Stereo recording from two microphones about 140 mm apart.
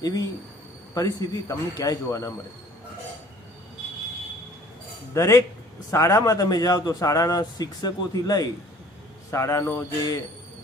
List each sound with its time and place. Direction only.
0.0 s a man's voice: 25° left (ahead or behind)
5.1 s a man's voice: 20° left (ahead or behind)